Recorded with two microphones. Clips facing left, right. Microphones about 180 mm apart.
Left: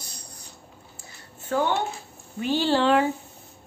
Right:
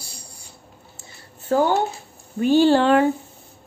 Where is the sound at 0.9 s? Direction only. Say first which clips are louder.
Right 1 dB; 35° right (ahead or behind).